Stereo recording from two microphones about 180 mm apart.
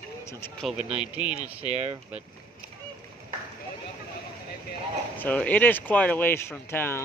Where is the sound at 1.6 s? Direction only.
35° right (ahead or behind).